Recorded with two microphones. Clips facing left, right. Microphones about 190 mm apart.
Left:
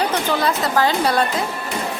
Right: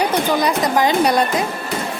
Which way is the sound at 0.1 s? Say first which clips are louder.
Right 3 dB; 15° right (ahead or behind).